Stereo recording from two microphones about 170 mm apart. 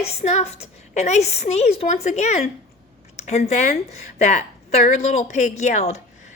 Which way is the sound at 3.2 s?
40° left (ahead or behind).